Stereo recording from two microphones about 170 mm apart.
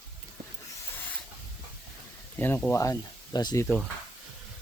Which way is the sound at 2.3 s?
10° left (ahead or behind).